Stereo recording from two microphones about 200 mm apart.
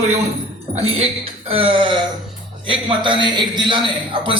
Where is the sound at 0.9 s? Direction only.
30° right (ahead or behind).